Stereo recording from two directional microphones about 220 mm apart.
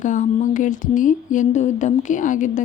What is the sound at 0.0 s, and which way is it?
Speech, 35° left (ahead or behind).